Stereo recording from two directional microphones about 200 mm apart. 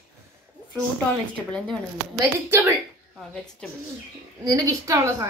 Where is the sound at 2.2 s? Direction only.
10° right (ahead or behind).